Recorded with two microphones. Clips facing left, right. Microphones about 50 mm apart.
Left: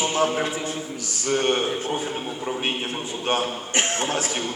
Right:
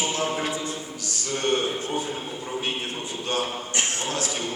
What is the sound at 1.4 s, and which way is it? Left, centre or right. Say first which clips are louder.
Speech: left 1 dB; left.